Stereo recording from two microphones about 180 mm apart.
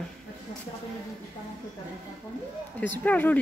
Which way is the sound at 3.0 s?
10° left (ahead or behind).